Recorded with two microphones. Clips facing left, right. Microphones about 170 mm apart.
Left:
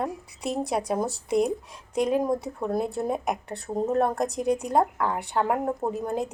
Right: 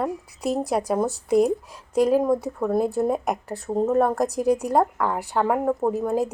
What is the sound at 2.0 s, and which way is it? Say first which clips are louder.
Speech: right 5 dB; 5° right (ahead or behind).